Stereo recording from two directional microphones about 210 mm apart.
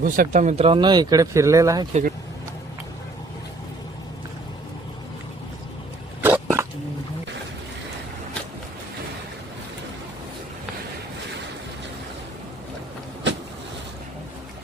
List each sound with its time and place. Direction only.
0.0 s speech: 40° right (ahead or behind); by 1.9 s 15° right (ahead or behind)
1.9 s speech: 35° right (ahead or behind)
6.2 s a sound: 10° right (ahead or behind)